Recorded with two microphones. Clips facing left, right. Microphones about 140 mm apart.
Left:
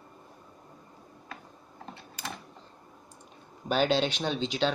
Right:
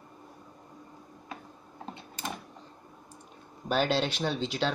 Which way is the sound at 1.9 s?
20° right (ahead or behind).